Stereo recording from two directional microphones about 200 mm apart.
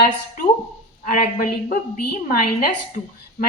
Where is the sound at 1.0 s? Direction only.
40° left (ahead or behind).